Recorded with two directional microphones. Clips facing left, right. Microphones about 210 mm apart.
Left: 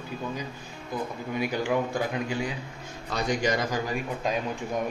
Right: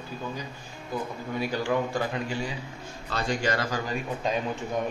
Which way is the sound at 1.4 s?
15° left (ahead or behind).